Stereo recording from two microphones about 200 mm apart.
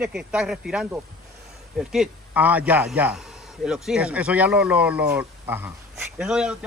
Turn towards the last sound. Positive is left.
turn(degrees=-5)  # may be behind; listen again after turning